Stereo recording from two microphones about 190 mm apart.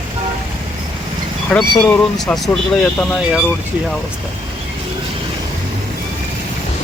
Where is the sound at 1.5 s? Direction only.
5° left (ahead or behind).